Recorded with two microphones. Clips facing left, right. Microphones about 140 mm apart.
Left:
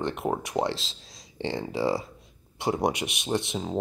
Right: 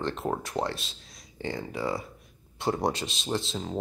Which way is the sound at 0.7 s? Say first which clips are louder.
Left 4 dB; 90° left.